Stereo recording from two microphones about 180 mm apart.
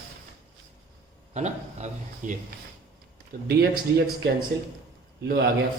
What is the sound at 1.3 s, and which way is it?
Speech, 40° right (ahead or behind).